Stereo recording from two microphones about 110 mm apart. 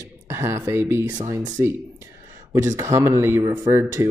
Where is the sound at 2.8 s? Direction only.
25° right (ahead or behind).